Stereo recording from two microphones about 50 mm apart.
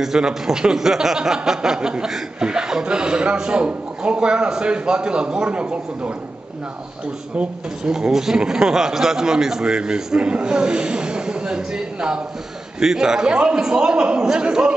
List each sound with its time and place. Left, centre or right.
0.0 s a man's voice: centre
7.9 s a man's voice: centre